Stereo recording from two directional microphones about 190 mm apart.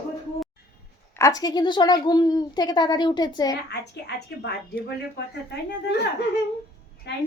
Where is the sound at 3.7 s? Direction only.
60° left (ahead or behind).